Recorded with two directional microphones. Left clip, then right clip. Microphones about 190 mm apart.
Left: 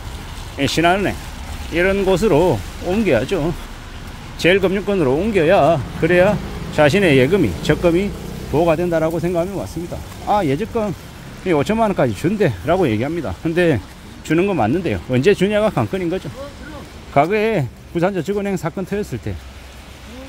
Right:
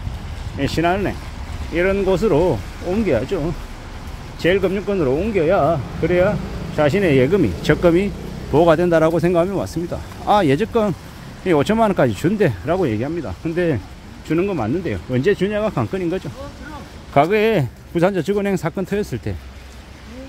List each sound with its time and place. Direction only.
0.6 s speech: 10° left (ahead or behind); by 10.9 s 15° right (ahead or behind)
11.4 s speech: 5° right (ahead or behind)